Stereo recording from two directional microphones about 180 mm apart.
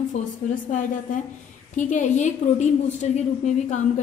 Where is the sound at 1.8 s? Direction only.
45° left (ahead or behind).